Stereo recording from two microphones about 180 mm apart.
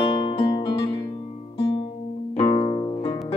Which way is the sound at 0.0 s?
25° left (ahead or behind).